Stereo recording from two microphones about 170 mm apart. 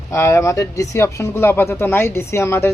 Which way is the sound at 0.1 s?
15° left (ahead or behind).